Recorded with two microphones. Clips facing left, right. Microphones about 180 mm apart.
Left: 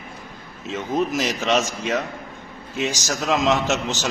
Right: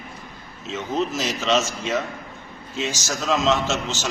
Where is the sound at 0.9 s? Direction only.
15° left (ahead or behind).